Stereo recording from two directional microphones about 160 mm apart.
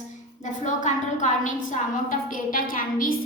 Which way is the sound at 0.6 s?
50° left (ahead or behind).